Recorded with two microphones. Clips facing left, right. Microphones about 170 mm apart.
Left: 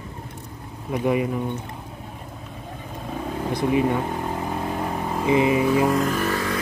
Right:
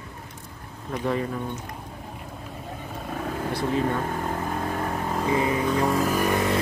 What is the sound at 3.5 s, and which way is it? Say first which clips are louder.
Vehicle: left 5 dB; 15° left (ahead or behind).